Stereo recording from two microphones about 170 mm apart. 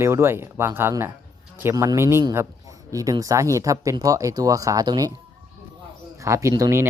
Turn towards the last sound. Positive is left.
turn(degrees=-20)  # may be behind; listen again after turning